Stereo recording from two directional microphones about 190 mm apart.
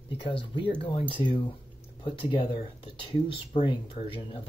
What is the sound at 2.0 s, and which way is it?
Speech, 25° left (ahead or behind).